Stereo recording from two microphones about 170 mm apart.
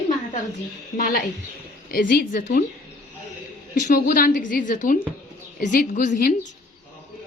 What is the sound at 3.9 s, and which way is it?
A woman's voice, 55° left (ahead or behind).